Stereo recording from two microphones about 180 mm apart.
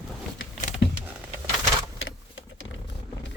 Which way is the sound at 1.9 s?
90° left.